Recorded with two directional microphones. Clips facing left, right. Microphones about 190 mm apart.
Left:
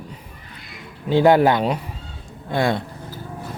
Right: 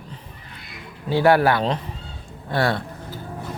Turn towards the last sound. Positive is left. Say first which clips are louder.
# left 2 dB
turn(degrees=15)  # may be behind; listen again after turning